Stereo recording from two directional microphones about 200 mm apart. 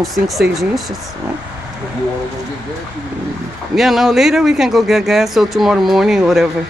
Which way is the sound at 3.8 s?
Centre (ahead or behind).